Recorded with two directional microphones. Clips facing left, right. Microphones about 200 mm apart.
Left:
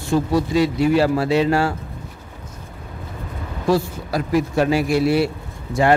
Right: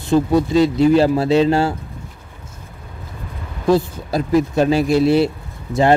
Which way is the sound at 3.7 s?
25° right (ahead or behind).